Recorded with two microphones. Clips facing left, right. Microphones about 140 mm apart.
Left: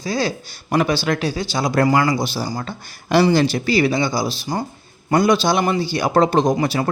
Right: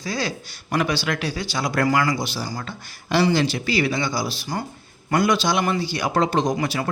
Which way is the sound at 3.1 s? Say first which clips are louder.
Left 4 dB; 45° left (ahead or behind).